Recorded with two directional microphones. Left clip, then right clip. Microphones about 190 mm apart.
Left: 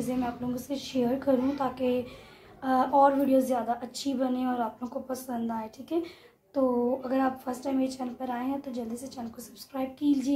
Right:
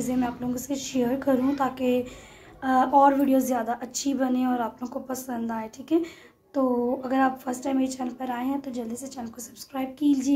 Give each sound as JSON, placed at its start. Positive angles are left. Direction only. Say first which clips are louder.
{"t": 0.2, "sound": "a woman's voice", "louder": "right 3 dB", "side_deg": -35}